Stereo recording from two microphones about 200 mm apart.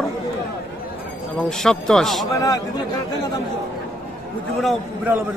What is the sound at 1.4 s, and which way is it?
Speech, 5° left (ahead or behind).